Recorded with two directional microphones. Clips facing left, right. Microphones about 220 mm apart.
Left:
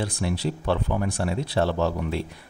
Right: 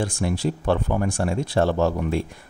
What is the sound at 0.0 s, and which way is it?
Speech, 50° right (ahead or behind).